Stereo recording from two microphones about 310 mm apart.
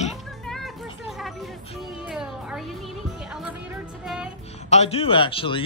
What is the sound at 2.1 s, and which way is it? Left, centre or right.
Music, centre.